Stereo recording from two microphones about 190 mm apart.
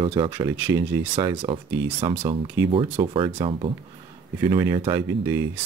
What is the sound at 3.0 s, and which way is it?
Speech, 30° right (ahead or behind).